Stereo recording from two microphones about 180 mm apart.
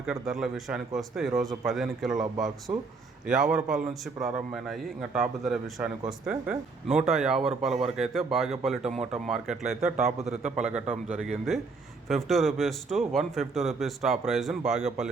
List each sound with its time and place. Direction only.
0.0 s a man's voice: 5° right (ahead or behind)
10.2 s a man's voice: 40° right (ahead or behind)
12.0 s a man's voice: centre (ahead or behind)